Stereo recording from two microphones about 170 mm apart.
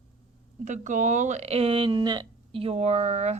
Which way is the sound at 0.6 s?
45° right (ahead or behind).